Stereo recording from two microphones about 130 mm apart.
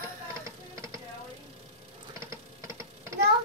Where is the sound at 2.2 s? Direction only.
20° right (ahead or behind).